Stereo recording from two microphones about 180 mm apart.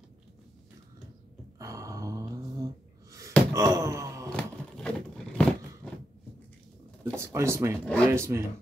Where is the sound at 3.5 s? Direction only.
15° right (ahead or behind).